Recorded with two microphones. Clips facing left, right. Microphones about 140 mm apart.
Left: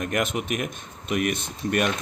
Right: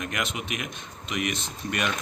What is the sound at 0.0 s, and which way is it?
Speech, 50° left (ahead or behind).